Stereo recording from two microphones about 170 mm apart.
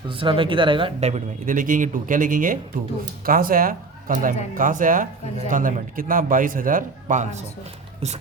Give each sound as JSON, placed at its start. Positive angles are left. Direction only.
{"t": 0.1, "sound": "speech", "side_deg": -30}